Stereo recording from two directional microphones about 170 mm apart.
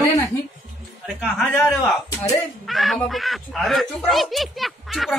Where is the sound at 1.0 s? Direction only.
Centre (ahead or behind).